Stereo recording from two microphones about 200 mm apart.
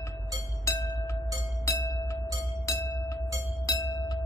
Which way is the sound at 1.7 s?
15° left (ahead or behind).